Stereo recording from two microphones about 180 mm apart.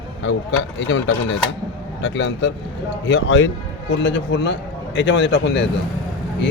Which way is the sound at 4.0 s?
75° left (ahead or behind).